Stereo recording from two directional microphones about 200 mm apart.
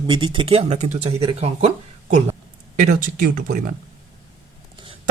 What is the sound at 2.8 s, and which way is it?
Speech, 40° right (ahead or behind).